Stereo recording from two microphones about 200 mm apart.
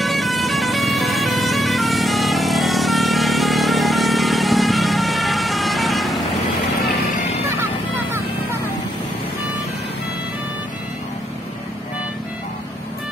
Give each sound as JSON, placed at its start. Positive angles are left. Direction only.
{"t": 0.0, "sound": "vehicle", "side_deg": 0}
{"t": 7.2, "sound": "music", "side_deg": 35}